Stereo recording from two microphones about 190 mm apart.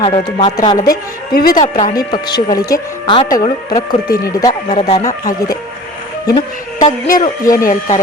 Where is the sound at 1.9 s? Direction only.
20° left (ahead or behind).